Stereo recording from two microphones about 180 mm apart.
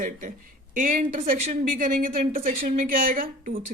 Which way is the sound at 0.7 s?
50° right (ahead or behind).